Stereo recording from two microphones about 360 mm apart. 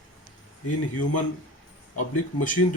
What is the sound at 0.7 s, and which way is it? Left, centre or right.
Speech, left.